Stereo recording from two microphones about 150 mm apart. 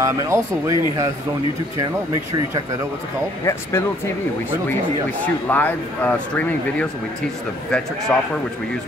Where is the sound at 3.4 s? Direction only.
15° left (ahead or behind).